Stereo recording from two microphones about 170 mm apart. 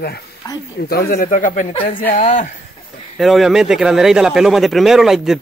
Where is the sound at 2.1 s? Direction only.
45° left (ahead or behind).